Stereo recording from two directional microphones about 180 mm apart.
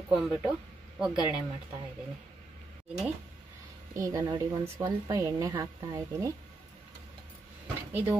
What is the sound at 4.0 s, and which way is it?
A woman's voice, 15° right (ahead or behind).